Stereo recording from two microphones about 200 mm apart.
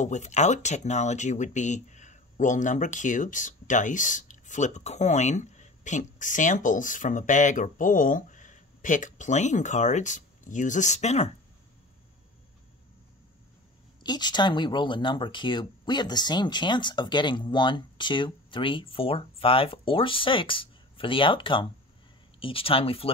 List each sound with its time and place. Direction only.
0.0 s speech: 35° left (ahead or behind)
14.0 s speech: 20° left (ahead or behind)